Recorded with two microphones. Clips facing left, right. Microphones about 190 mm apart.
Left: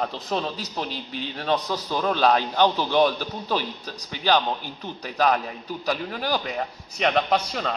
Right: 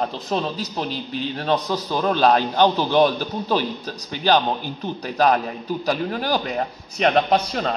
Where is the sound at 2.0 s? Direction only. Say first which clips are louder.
Right 3 dB; 40° right (ahead or behind).